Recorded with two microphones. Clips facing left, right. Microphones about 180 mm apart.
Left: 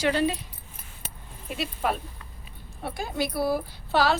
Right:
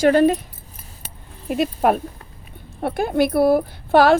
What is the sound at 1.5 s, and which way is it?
A woman's voice, 50° right (ahead or behind).